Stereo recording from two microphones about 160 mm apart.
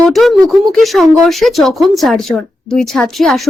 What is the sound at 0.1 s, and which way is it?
Speech, centre (ahead or behind).